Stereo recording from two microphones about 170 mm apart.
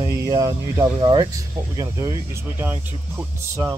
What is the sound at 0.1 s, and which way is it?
Speech, 20° right (ahead or behind).